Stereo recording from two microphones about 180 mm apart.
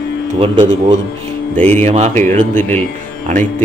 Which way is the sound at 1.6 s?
10° left (ahead or behind).